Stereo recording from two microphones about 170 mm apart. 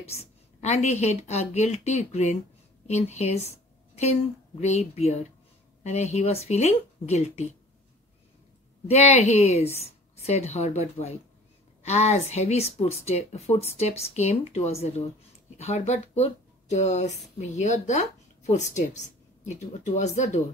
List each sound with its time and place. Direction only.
0.1 s a woman's voice: 40° left (ahead or behind)
8.8 s speech: 40° left (ahead or behind)